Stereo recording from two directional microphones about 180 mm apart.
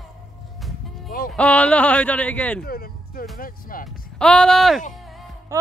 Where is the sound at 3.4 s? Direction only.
50° left (ahead or behind).